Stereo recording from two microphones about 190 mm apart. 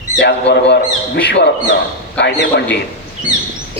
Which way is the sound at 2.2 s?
60° left (ahead or behind).